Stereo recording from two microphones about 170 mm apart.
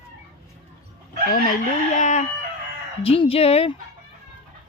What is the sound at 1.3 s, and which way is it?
Speech, 55° left (ahead or behind).